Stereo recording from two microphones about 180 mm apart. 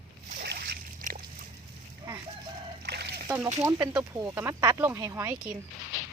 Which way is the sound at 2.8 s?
65° right (ahead or behind).